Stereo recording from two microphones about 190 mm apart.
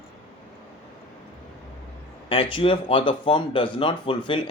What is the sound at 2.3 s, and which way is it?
Speech, 30° left (ahead or behind).